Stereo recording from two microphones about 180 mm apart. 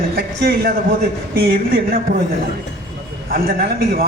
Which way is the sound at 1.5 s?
55° right (ahead or behind).